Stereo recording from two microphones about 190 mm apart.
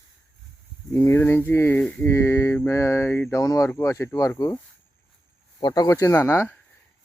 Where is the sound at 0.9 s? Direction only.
15° left (ahead or behind).